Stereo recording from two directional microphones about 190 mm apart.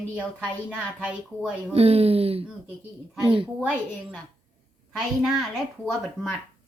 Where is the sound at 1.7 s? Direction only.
30° right (ahead or behind).